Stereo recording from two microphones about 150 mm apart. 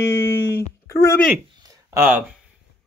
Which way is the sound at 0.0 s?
15° left (ahead or behind).